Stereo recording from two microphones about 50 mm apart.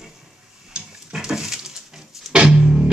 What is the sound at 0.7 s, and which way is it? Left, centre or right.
Music, centre.